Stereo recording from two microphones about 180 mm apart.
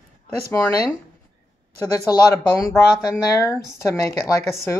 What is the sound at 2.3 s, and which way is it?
Speech, 15° left (ahead or behind).